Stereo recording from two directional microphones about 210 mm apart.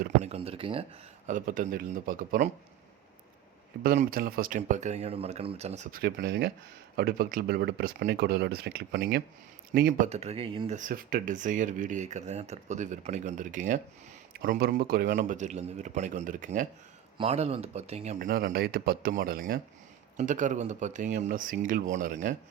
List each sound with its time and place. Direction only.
0.2 s speech: 30° right (ahead or behind)
1.3 s speech: 40° right (ahead or behind)
3.8 s speech: 45° right (ahead or behind)
10.1 s speech: 30° right (ahead or behind)
10.8 s speech: 40° right (ahead or behind)